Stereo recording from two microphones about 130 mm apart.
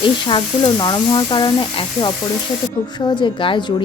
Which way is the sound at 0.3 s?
40° left (ahead or behind).